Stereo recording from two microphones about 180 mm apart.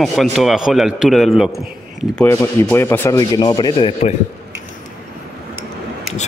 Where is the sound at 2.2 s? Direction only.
10° left (ahead or behind).